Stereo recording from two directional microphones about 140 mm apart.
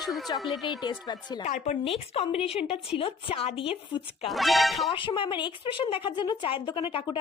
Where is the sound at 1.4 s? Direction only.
60° left (ahead or behind); by 4.3 s 40° left (ahead or behind).